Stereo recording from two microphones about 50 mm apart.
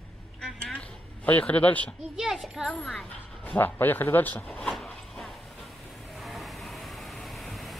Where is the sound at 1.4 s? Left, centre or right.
Left.